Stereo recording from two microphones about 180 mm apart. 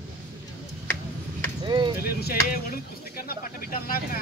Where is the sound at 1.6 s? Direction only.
25° right (ahead or behind).